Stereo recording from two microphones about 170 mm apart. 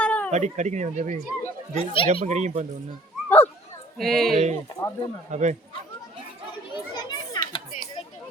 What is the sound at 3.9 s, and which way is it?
Speech, centre (ahead or behind).